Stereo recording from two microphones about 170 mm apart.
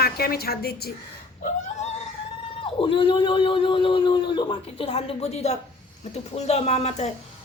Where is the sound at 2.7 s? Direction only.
30° left (ahead or behind).